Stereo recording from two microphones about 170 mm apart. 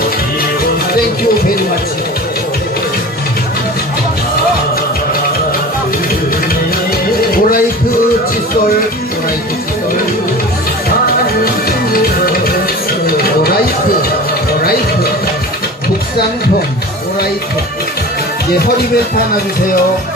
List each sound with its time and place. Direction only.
7.3 s music: 60° left (ahead or behind)
10.8 s music: 60° left (ahead or behind)